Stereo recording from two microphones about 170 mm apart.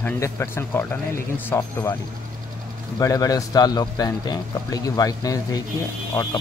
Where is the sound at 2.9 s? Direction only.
20° left (ahead or behind).